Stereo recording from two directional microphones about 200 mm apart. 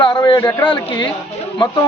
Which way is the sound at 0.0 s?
20° left (ahead or behind).